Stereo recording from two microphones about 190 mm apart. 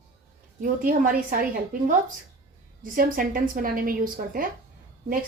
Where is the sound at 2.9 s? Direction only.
45° right (ahead or behind).